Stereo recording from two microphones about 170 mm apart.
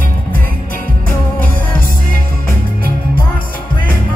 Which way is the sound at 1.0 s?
55° left (ahead or behind).